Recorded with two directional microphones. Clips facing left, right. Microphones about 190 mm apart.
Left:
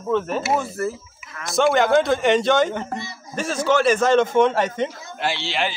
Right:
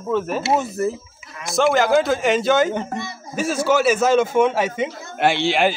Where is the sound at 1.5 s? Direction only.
Centre (ahead or behind).